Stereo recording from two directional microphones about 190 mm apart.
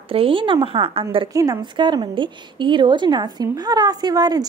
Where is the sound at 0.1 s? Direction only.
30° right (ahead or behind).